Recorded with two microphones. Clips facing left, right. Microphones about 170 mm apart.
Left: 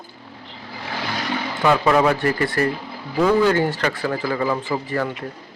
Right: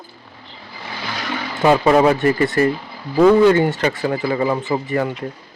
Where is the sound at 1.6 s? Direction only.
25° right (ahead or behind).